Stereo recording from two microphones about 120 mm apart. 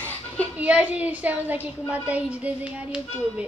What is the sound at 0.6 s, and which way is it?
A woman's voice, 10° right (ahead or behind).